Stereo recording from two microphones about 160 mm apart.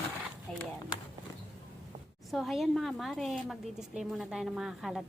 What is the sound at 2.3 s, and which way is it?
A woman's voice, centre (ahead or behind).